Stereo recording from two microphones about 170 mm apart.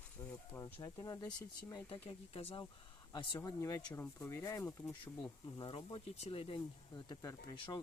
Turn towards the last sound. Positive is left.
turn(degrees=25)  # may be behind; listen again after turning